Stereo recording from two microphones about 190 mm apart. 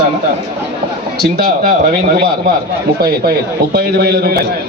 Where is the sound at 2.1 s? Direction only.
55° right (ahead or behind).